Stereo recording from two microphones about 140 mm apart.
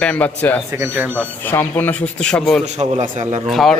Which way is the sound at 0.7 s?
15° right (ahead or behind).